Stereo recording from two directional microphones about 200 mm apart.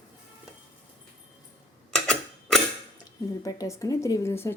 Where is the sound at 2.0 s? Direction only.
Centre (ahead or behind).